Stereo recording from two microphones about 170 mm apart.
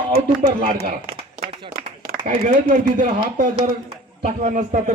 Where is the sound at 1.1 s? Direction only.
35° right (ahead or behind).